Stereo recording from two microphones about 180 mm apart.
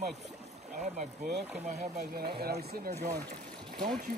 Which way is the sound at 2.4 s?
60° right (ahead or behind).